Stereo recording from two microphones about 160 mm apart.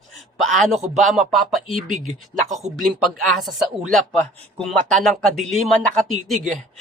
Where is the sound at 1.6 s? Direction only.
55° right (ahead or behind).